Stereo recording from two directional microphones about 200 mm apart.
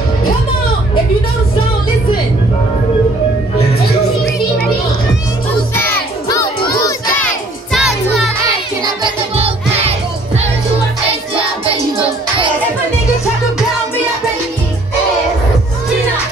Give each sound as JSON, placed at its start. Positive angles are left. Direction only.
{"t": 5.8, "sound": "crowd", "side_deg": 15}
{"t": 7.7, "sound": "music", "side_deg": 0}
{"t": 8.8, "sound": "music", "side_deg": -25}